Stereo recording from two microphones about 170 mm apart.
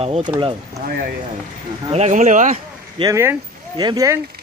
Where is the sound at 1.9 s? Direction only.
40° right (ahead or behind).